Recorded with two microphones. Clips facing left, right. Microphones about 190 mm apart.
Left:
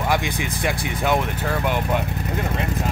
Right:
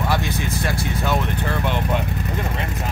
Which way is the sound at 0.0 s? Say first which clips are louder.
Even; 15° left (ahead or behind).